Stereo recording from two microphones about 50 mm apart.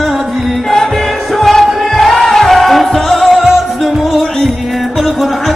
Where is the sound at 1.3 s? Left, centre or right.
Centre.